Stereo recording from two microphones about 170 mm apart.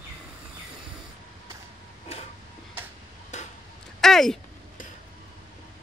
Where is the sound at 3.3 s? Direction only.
45° left (ahead or behind).